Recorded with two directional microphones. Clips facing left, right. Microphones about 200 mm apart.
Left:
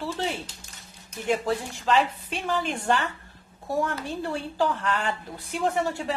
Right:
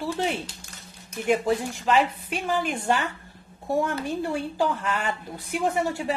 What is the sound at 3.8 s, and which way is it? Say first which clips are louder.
Speech: right 2 dB; 20° right (ahead or behind).